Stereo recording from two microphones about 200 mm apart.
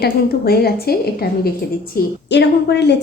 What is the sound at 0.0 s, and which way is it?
A woman's voice, 50° left (ahead or behind).